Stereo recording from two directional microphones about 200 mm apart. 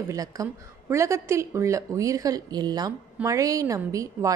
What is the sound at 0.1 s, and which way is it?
A woman's voice, 15° right (ahead or behind).